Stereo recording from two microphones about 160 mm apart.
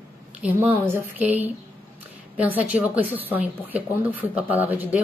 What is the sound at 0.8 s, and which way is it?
Speech, 10° right (ahead or behind).